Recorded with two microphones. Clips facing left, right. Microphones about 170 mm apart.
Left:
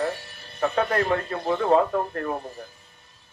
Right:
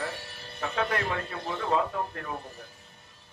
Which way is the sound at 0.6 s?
40° left (ahead or behind).